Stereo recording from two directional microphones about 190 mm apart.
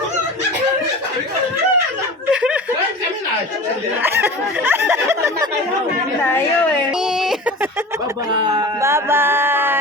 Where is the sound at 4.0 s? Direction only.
10° right (ahead or behind).